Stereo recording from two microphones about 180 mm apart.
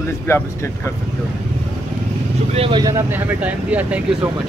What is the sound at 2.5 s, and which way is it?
Speech, 30° right (ahead or behind).